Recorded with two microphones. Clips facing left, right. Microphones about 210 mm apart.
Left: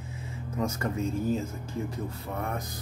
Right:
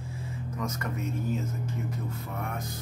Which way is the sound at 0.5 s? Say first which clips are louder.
Left 5 dB; 30° left (ahead or behind).